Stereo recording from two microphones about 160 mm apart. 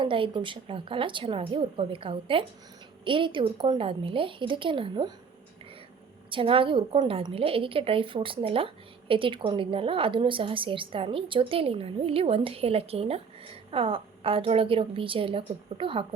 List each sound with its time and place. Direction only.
0.0 s a woman's voice: 30° right (ahead or behind)
6.3 s a woman's voice: 35° right (ahead or behind)